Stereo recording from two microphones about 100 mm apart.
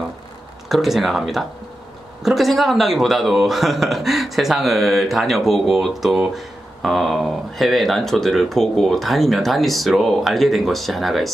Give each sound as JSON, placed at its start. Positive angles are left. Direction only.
{"t": 0.7, "sound": "speech", "side_deg": 0}